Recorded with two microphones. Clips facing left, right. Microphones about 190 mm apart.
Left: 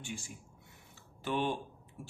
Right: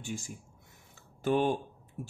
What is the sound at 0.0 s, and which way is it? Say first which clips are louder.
A man's voice: right 5 dB; 45° right (ahead or behind).